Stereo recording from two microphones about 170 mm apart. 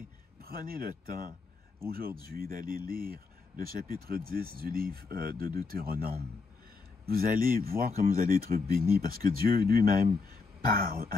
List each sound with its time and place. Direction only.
0.4 s speech: 60° right (ahead or behind)